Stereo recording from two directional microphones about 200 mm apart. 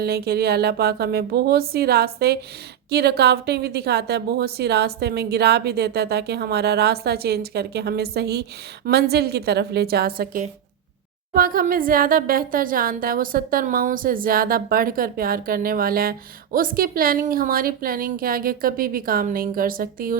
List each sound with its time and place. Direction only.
0.0 s a woman's voice: 50° right (ahead or behind)